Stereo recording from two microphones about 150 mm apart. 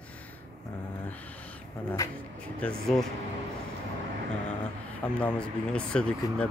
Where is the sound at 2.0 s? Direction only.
20° left (ahead or behind).